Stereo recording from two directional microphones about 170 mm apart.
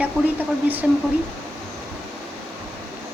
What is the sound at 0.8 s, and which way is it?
Speech, 5° right (ahead or behind).